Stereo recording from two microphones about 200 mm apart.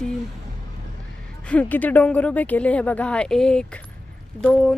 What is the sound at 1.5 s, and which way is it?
Speech, 10° left (ahead or behind).